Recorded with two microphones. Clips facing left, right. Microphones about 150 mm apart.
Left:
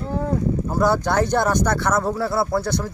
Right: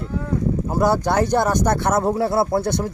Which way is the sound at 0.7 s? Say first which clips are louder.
Right 1 dB; 10° right (ahead or behind).